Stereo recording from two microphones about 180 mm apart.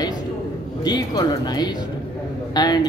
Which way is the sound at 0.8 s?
20° left (ahead or behind).